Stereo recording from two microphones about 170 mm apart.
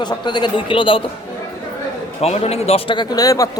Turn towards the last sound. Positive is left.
turn(degrees=20)  # may be behind; listen again after turning